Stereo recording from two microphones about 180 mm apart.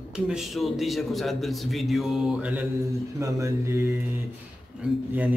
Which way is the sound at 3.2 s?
15° right (ahead or behind).